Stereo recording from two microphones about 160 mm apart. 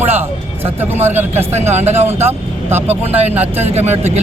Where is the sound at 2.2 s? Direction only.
15° right (ahead or behind).